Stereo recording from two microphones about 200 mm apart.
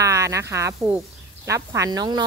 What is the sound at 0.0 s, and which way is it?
A woman's voice, 15° right (ahead or behind).